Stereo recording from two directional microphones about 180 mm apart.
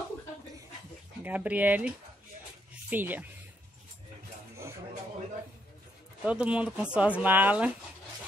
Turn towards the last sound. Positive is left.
turn(degrees=-10)  # may be behind; listen again after turning